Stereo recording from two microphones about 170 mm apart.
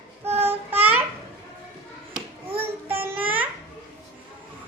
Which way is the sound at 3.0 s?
10° right (ahead or behind).